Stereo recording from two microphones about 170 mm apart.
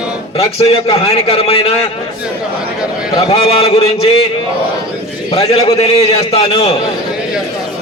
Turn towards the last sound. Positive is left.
turn(degrees=35)  # may be behind; listen again after turning